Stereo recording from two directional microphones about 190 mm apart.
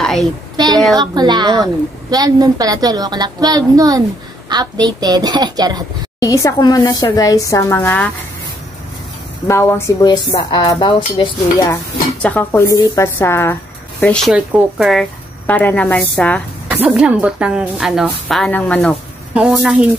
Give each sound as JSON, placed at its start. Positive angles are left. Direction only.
{"t": 0.0, "sound": "a sound", "side_deg": 0}
{"t": 0.9, "sound": "a woman's voice", "side_deg": -20}
{"t": 6.1, "sound": "speech", "side_deg": 15}
{"t": 9.5, "sound": "speech", "side_deg": 15}
{"t": 11.7, "sound": "speech", "side_deg": 10}
{"t": 14.3, "sound": "speech", "side_deg": -5}
{"t": 16.6, "sound": "a woman's voice", "side_deg": -5}